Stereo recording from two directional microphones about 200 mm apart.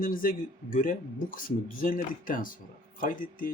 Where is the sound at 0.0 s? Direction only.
45° left (ahead or behind).